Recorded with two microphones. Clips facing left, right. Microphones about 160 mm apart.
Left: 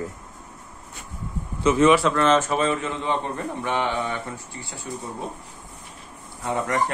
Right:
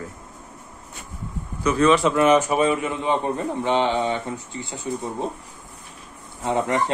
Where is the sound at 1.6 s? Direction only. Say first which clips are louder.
Left 1 dB; 20° left (ahead or behind).